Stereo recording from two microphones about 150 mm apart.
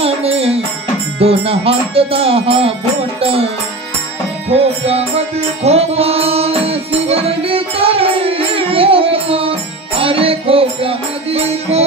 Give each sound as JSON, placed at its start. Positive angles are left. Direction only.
{"t": 0.0, "sound": "music", "side_deg": -40}
{"t": 5.6, "sound": "music", "side_deg": -45}